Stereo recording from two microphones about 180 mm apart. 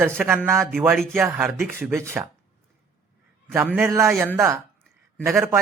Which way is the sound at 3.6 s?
5° right (ahead or behind).